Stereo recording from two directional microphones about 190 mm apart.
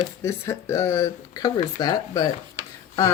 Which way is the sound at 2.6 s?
25° right (ahead or behind).